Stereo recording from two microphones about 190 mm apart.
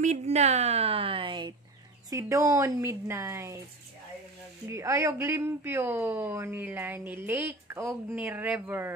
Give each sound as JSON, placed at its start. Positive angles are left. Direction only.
{"t": 0.0, "sound": "a woman's voice", "side_deg": -35}
{"t": 4.6, "sound": "speech", "side_deg": -15}